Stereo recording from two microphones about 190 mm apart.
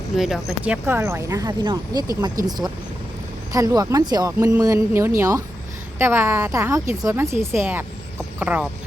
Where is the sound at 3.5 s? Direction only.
20° right (ahead or behind).